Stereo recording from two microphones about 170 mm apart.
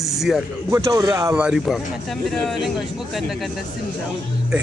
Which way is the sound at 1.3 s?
5° right (ahead or behind).